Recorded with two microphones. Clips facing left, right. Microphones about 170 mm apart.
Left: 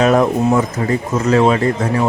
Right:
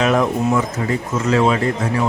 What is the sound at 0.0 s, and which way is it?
Speech, 40° left (ahead or behind).